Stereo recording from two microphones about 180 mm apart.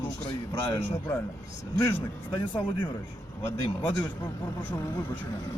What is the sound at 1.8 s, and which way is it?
Speech, 15° left (ahead or behind).